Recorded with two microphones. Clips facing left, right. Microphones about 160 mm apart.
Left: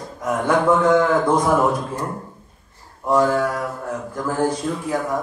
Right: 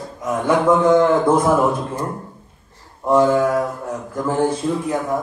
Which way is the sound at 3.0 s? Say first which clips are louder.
Right 3 dB; 20° right (ahead or behind).